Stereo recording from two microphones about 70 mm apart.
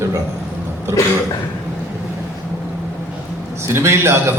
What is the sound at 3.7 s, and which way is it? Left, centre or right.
Speech, right.